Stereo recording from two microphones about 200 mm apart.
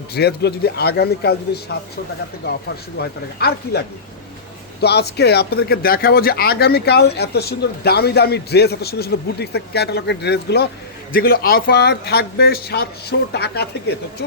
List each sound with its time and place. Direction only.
0.1 s speech: 55° left (ahead or behind)
3.0 s speech: 55° left (ahead or behind)